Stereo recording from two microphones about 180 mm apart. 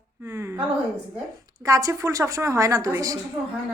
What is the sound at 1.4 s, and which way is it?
A woman's voice, 20° right (ahead or behind).